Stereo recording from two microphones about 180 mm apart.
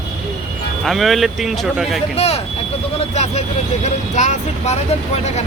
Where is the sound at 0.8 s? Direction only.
Centre (ahead or behind).